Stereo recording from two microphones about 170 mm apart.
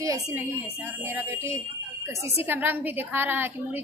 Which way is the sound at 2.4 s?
10° right (ahead or behind).